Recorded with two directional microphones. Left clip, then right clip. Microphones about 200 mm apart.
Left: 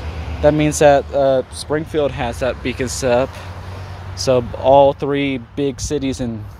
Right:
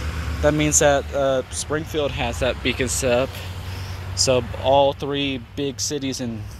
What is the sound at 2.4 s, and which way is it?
Speech, 10° left (ahead or behind).